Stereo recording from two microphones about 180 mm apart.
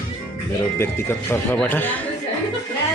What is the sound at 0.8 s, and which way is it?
Speech, 15° left (ahead or behind).